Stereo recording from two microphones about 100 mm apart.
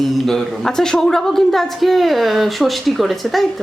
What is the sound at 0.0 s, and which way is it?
A woman's voice, centre (ahead or behind).